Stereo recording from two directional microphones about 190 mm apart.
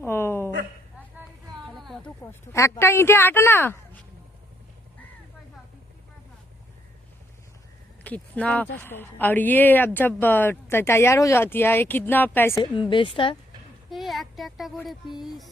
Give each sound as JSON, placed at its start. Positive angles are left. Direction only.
{"t": 0.0, "sound": "a sound", "side_deg": 10}
{"t": 1.7, "sound": "a sound", "side_deg": 0}
{"t": 2.2, "sound": "speech", "side_deg": 15}
{"t": 8.0, "sound": "speech", "side_deg": 5}
{"t": 12.9, "sound": "speech", "side_deg": 25}
{"t": 13.9, "sound": "speech", "side_deg": 0}
{"t": 15.2, "sound": "music", "side_deg": 0}